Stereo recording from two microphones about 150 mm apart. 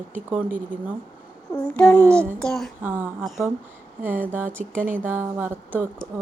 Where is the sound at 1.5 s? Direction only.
10° left (ahead or behind).